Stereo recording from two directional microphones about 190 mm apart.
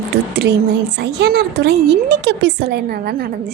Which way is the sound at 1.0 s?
60° right (ahead or behind).